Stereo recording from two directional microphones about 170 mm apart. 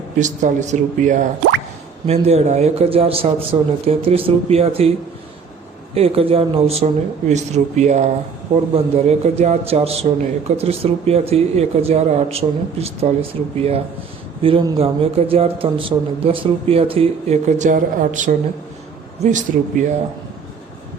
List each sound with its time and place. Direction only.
0.2 s speech: 45° right (ahead or behind)
5.9 s speech: 35° right (ahead or behind)